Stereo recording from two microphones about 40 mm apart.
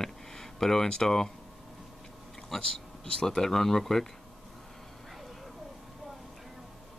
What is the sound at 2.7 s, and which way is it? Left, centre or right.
Speech, centre.